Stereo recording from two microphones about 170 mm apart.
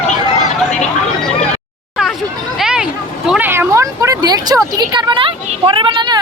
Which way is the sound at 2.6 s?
5° right (ahead or behind).